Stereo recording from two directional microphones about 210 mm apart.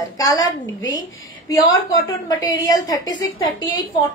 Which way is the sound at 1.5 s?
15° left (ahead or behind).